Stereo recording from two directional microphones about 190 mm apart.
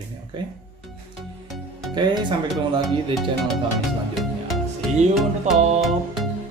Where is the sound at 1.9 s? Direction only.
25° right (ahead or behind).